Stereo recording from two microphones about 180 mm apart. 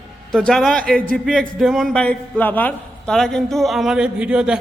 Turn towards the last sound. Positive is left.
turn(degrees=-5)  # may be behind; listen again after turning